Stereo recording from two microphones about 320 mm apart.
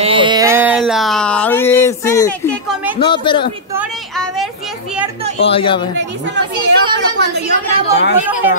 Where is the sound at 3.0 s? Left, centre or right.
Centre.